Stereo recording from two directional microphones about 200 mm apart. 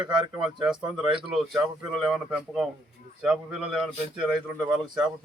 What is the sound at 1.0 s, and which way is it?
Speech, 25° right (ahead or behind).